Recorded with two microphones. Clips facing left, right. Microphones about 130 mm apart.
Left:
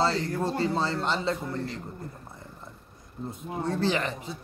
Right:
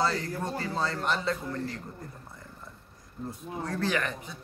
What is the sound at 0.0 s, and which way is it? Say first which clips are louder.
Speech: left 3 dB; 30° left (ahead or behind).